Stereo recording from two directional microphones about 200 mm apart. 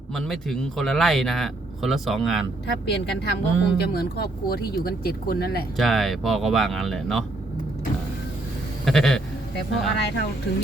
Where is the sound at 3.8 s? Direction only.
50° left (ahead or behind).